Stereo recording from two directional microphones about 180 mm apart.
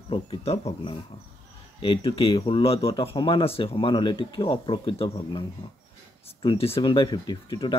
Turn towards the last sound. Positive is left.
turn(degrees=25)  # may be behind; listen again after turning